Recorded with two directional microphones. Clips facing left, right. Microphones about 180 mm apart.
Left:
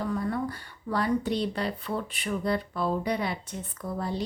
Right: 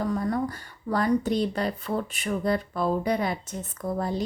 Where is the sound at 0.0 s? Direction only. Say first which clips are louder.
Right 3 dB; 40° right (ahead or behind).